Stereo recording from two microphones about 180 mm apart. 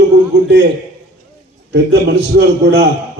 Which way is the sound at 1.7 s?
65° right (ahead or behind).